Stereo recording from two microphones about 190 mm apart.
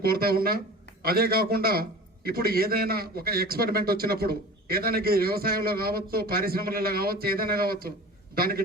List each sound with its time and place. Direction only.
0.0 s a man's voice: 50° right (ahead or behind)